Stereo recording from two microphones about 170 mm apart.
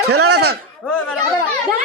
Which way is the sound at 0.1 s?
70° right (ahead or behind).